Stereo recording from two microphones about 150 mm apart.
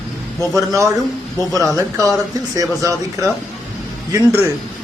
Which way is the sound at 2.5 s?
20° right (ahead or behind).